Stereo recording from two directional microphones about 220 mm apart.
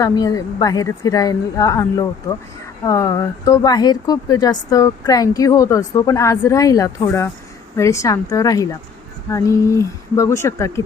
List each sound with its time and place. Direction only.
0.0 s speech: 15° left (ahead or behind)